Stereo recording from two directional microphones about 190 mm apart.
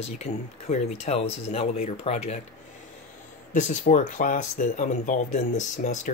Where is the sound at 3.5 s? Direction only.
40° left (ahead or behind).